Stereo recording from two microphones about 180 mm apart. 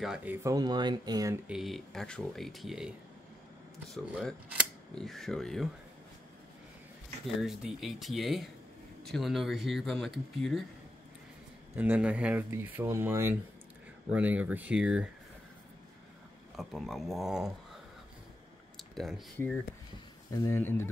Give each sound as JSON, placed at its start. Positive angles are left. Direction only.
{"t": 0.0, "sound": "speech", "side_deg": -5}
{"t": 1.5, "sound": "speech", "side_deg": 0}
{"t": 3.9, "sound": "speech", "side_deg": 0}
{"t": 7.4, "sound": "speech", "side_deg": 0}
{"t": 11.7, "sound": "speech", "side_deg": -10}
{"t": 16.5, "sound": "speech", "side_deg": 0}
{"t": 18.8, "sound": "speech", "side_deg": 0}